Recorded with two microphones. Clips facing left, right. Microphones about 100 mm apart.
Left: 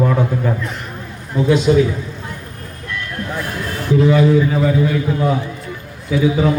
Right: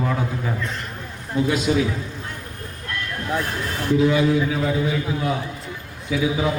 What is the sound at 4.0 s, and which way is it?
A man's voice, centre (ahead or behind).